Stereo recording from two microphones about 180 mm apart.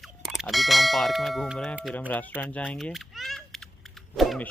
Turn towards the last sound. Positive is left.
turn(degrees=0)  # may be behind; listen again after turning